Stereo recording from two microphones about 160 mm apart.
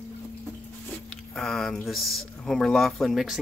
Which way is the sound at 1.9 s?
Centre (ahead or behind).